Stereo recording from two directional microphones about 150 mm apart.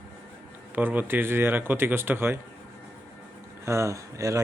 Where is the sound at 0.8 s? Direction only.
15° right (ahead or behind).